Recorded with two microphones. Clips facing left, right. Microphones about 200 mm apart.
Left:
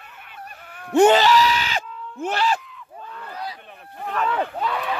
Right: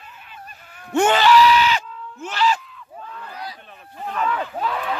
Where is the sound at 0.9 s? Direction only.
35° left (ahead or behind); by 2.6 s 55° left (ahead or behind).